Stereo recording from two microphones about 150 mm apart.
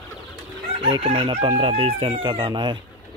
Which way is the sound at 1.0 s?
40° right (ahead or behind).